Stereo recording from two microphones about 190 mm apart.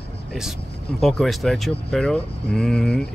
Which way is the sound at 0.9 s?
Centre (ahead or behind).